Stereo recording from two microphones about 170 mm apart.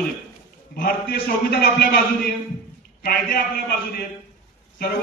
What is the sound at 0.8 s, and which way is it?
A man's voice, 60° left (ahead or behind).